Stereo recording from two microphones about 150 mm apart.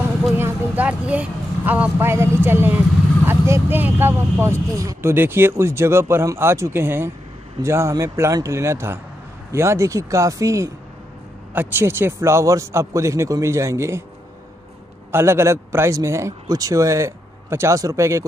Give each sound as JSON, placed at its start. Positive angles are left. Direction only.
{"t": 0.4, "sound": "a man's voice", "side_deg": -10}
{"t": 15.0, "sound": "a man's voice", "side_deg": -15}